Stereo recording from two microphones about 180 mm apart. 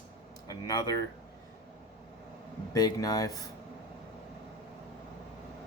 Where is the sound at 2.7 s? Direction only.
20° left (ahead or behind).